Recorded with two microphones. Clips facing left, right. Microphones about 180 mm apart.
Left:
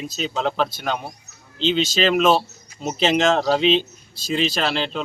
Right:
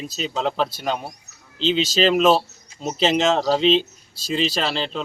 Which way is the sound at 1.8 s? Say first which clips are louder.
Right 1 dB; 35° right (ahead or behind).